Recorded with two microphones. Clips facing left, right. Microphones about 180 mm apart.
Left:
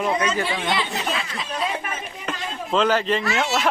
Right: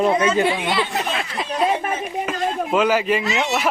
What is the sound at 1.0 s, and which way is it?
Speech, 55° right (ahead or behind).